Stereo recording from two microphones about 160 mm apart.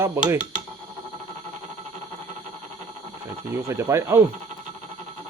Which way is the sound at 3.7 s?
15° right (ahead or behind).